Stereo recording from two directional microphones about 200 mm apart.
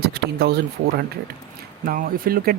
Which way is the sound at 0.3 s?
50° right (ahead or behind).